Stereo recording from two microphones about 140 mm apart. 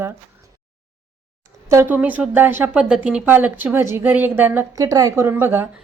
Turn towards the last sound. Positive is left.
turn(degrees=-15)  # may be behind; listen again after turning